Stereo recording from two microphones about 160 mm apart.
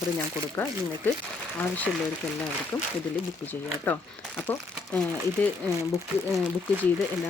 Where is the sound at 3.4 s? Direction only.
10° left (ahead or behind).